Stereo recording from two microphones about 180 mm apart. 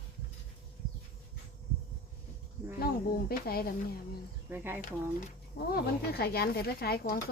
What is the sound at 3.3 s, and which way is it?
Speech, 55° left (ahead or behind).